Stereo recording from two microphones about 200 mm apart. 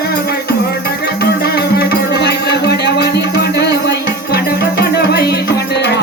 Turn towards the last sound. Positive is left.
turn(degrees=55)  # may be behind; listen again after turning